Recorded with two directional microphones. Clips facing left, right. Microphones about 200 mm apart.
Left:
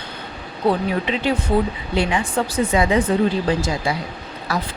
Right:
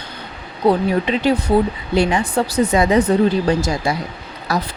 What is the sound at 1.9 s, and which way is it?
Speech, 40° right (ahead or behind).